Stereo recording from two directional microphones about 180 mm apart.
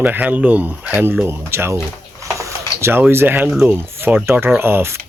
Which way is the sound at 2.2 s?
15° right (ahead or behind).